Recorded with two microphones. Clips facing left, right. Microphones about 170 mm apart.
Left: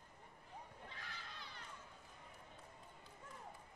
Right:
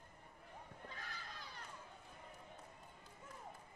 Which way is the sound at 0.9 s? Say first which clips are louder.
Right 2 dB; 40° right (ahead or behind).